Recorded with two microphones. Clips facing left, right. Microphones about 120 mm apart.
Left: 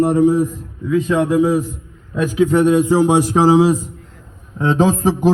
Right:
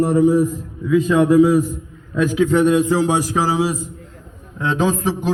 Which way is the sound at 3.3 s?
30° left (ahead or behind).